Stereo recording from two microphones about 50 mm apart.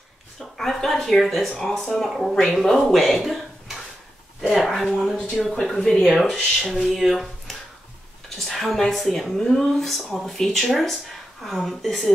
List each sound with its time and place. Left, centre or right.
0.6 s speech: centre
5.1 s speech: centre
5.4 s speech: centre
6.7 s speech: centre
8.4 s speech: centre
9.4 s speech: centre